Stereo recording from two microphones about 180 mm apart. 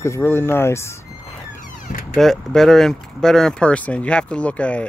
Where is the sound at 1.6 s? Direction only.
50° left (ahead or behind).